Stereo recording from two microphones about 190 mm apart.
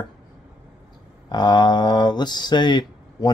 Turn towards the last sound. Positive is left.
turn(degrees=25)  # may be behind; listen again after turning